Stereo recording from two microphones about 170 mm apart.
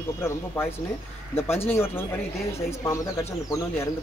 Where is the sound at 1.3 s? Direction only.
15° left (ahead or behind).